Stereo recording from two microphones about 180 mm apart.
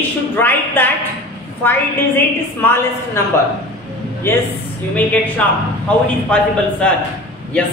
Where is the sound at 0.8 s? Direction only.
10° left (ahead or behind).